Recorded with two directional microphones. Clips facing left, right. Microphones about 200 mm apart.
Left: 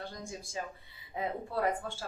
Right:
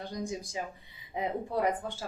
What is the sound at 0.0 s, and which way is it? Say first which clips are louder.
Speech: right 6 dB; 15° right (ahead or behind).